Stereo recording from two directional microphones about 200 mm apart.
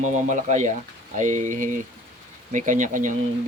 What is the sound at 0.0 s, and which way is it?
Speech, 35° right (ahead or behind).